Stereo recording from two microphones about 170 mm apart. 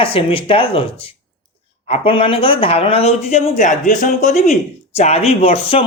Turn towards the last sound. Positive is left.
turn(degrees=35)  # may be behind; listen again after turning